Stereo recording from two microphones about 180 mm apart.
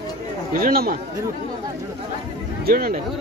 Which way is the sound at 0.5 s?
50° right (ahead or behind).